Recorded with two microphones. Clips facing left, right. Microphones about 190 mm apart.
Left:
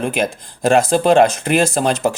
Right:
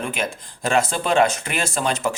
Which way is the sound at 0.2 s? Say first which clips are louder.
Left 7 dB; 40° left (ahead or behind).